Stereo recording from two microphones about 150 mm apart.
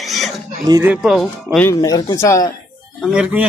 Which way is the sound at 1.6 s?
20° left (ahead or behind).